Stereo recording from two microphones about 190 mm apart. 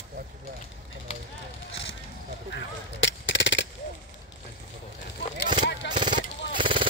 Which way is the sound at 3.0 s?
70° left (ahead or behind).